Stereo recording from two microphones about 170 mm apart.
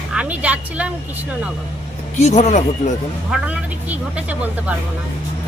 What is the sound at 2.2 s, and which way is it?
Speech, 40° left (ahead or behind).